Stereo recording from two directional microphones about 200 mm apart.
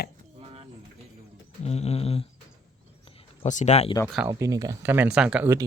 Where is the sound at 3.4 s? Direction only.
35° left (ahead or behind).